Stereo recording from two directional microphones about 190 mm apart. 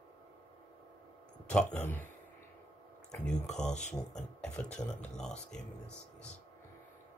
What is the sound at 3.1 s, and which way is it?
Speech, 5° left (ahead or behind).